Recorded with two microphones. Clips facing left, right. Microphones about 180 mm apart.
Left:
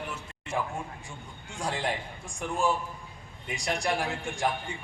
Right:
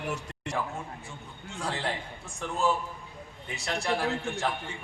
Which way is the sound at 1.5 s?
15° left (ahead or behind).